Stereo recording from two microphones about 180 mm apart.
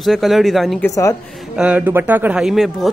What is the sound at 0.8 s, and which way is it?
Speech, 15° left (ahead or behind).